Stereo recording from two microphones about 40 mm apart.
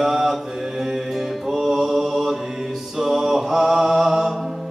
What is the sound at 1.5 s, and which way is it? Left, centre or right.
Mantra, centre.